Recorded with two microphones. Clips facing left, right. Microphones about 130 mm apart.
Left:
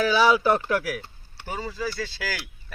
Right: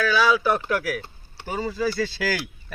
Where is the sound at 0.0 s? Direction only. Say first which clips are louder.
Left 1 dB; 25° left (ahead or behind).